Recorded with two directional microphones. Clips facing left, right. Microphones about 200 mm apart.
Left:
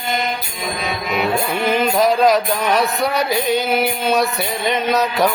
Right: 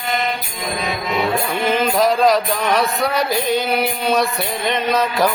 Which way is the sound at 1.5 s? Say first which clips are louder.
Even; centre (ahead or behind).